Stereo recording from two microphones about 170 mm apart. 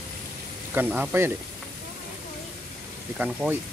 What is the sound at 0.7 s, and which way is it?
Speech, 10° right (ahead or behind).